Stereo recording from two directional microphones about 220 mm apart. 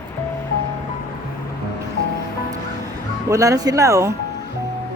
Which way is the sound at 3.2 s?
15° right (ahead or behind).